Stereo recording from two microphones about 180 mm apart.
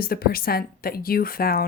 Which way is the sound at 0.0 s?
55° left (ahead or behind).